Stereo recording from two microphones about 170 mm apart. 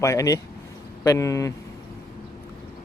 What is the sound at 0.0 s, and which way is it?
Speech, 20° left (ahead or behind).